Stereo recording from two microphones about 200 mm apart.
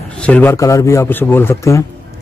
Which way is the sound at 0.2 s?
10° left (ahead or behind).